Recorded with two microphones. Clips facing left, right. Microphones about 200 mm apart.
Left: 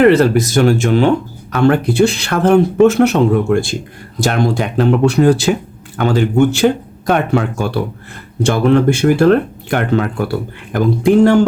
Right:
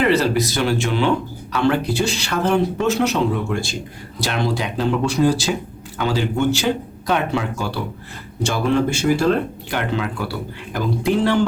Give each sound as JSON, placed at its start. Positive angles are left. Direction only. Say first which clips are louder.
{"t": 0.0, "sound": "speech", "louder": "left 8 dB", "side_deg": 50}